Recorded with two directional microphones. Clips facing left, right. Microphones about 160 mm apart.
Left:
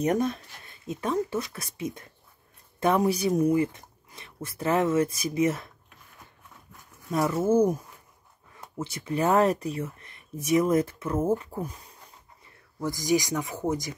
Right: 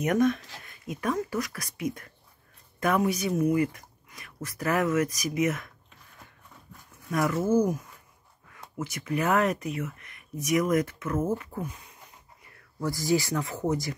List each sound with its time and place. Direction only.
0.0 s speech: 30° left (ahead or behind)
7.1 s speech: 25° left (ahead or behind)
12.8 s speech: 15° left (ahead or behind)